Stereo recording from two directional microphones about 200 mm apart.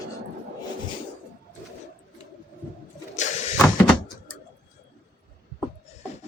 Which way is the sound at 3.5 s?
5° left (ahead or behind).